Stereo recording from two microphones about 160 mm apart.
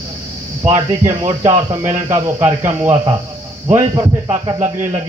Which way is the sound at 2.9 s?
35° right (ahead or behind).